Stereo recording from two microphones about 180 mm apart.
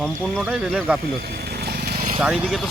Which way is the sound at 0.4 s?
5° right (ahead or behind).